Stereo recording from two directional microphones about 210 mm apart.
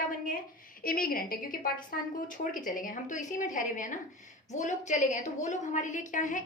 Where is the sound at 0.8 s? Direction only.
45° left (ahead or behind).